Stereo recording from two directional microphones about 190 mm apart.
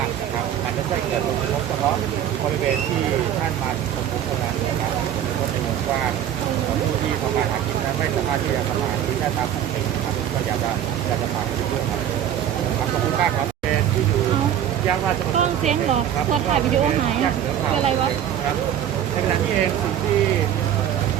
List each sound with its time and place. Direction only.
15.4 s speech: 40° right (ahead or behind)